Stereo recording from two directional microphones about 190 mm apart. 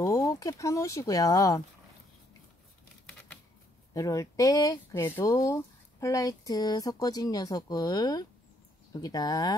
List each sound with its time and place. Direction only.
0.0 s speech: 15° left (ahead or behind)
3.9 s speech: 15° left (ahead or behind)